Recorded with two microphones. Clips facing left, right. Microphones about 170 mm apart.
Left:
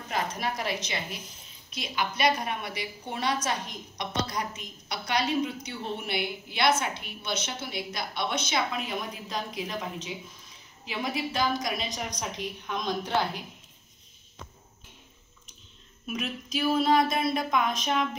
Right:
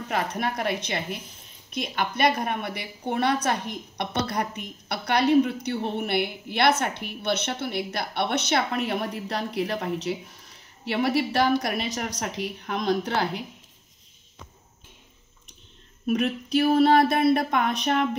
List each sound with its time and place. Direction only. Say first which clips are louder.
0.1 s a woman's voice: right 3 dB; 60° right (ahead or behind)
16.1 s a woman's voice: right 9 dB; 60° right (ahead or behind)